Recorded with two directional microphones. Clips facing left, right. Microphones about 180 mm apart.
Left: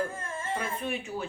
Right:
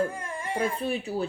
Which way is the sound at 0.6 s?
35° right (ahead or behind).